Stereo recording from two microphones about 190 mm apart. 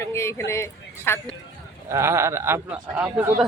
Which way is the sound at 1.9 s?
15° right (ahead or behind).